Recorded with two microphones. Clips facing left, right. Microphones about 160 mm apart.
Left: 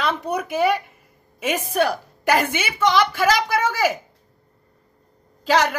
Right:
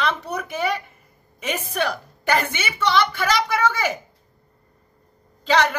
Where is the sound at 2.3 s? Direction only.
10° left (ahead or behind).